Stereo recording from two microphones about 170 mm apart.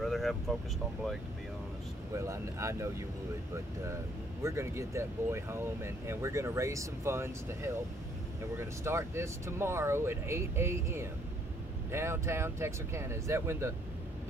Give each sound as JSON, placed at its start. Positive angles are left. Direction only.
{"t": 0.0, "sound": "vehicle", "side_deg": 0}
{"t": 2.1, "sound": "speech", "side_deg": -15}
{"t": 4.4, "sound": "speech", "side_deg": -15}